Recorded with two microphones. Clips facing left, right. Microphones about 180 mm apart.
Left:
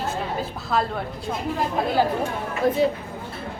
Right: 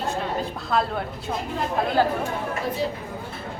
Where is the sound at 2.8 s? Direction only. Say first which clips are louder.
Left 5 dB; 55° left (ahead or behind).